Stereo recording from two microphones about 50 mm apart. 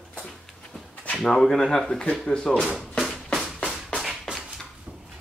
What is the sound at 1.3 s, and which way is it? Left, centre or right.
Speech, centre.